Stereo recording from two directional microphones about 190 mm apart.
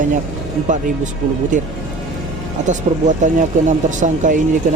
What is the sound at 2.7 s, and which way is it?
Speech, 40° right (ahead or behind).